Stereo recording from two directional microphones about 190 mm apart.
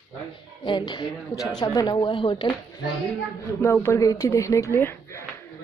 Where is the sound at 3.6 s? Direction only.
10° left (ahead or behind).